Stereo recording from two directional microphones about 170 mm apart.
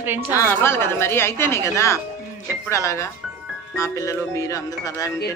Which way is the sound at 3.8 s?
20° left (ahead or behind).